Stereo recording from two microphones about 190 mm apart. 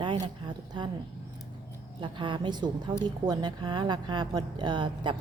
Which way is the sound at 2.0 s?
25° right (ahead or behind).